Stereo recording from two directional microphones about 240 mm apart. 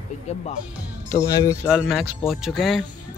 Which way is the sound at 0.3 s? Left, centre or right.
Left.